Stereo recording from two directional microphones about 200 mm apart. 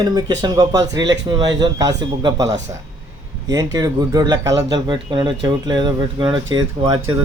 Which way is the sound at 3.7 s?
20° right (ahead or behind).